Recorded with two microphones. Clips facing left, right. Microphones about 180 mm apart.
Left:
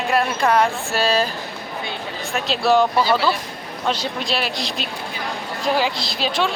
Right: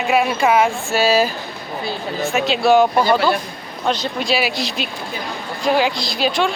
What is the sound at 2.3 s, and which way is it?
Speech, centre (ahead or behind).